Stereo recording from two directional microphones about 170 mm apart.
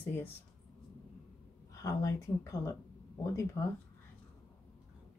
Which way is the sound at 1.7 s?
20° left (ahead or behind).